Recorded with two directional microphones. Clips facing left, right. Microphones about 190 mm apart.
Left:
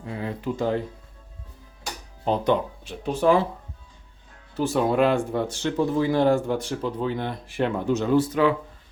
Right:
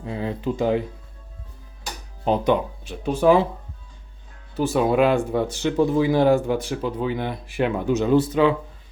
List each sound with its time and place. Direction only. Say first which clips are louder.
0.0 s speech: right 3 dB; 25° right (ahead or behind)
2.2 s speech: right 2 dB; 10° right (ahead or behind)
4.5 s speech: right 2 dB; 5° right (ahead or behind)
8.1 s speech: right 2 dB; 20° right (ahead or behind)